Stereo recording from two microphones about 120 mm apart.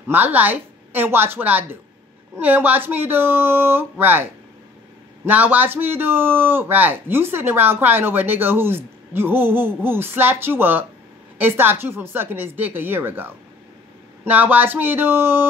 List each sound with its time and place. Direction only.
0.1 s a man's voice: 15° right (ahead or behind)